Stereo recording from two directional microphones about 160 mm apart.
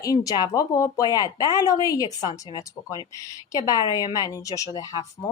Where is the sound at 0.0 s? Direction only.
20° left (ahead or behind).